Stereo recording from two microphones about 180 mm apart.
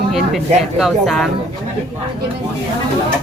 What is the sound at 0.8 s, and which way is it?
Speech, centre (ahead or behind).